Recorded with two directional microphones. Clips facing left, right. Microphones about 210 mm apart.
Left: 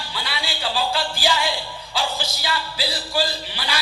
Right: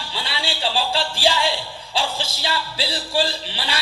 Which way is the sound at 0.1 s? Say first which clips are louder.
Right 2 dB; 30° right (ahead or behind).